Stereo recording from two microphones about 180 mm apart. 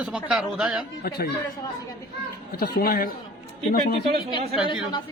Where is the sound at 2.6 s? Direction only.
55° left (ahead or behind).